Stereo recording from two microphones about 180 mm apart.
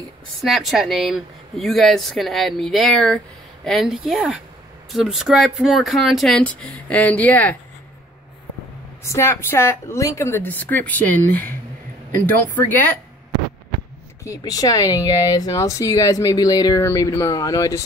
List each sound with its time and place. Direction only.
0.4 s speech: centre (ahead or behind)
9.0 s speech: 15° left (ahead or behind)
14.2 s speech: 20° left (ahead or behind)